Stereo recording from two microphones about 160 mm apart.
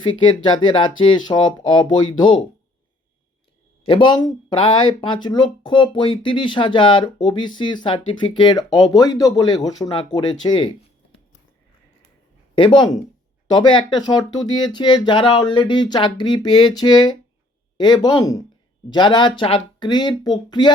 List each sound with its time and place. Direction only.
0.0 s speech: 30° left (ahead or behind)
3.8 s speech: 30° left (ahead or behind)
12.5 s speech: 30° left (ahead or behind)